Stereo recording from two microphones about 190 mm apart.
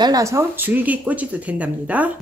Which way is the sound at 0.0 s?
20° right (ahead or behind).